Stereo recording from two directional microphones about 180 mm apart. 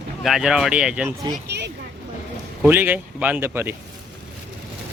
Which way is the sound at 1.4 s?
70° right (ahead or behind).